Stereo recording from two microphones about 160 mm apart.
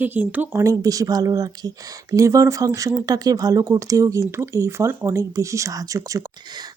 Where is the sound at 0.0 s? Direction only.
10° right (ahead or behind).